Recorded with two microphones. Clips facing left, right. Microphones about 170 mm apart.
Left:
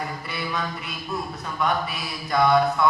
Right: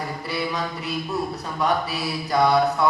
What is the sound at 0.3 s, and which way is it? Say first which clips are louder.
Speech: right 5 dB; 35° right (ahead or behind).